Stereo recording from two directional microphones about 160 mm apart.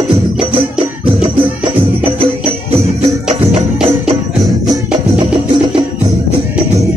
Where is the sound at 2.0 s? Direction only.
35° right (ahead or behind).